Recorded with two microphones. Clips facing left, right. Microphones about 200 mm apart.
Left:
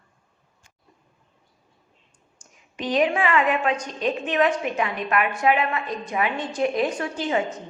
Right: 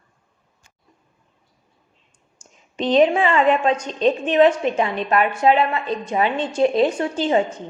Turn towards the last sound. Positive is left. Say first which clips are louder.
# right 5 dB
turn(degrees=-30)  # may be behind; listen again after turning